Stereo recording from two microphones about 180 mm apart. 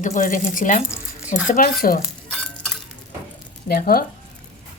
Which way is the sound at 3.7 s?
55° left (ahead or behind).